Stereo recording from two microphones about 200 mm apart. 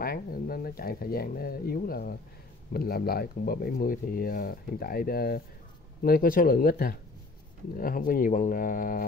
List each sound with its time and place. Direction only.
0.0 s speech: 45° left (ahead or behind)